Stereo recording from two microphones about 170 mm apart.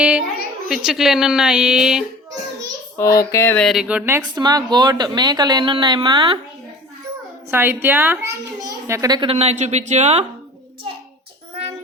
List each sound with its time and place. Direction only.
0.0 s a child's voice: 5° right (ahead or behind)
3.0 s a sound: 20° left (ahead or behind)
3.7 s a child's voice: 5° right (ahead or behind)
4.2 s a woman's voice: 25° right (ahead or behind)
7.5 s a child's voice: 10° right (ahead or behind)
9.3 s speech: 40° right (ahead or behind)